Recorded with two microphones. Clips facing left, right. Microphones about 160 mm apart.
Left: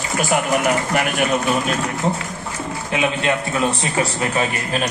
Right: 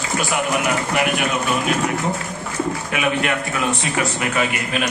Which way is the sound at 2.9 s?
25° left (ahead or behind).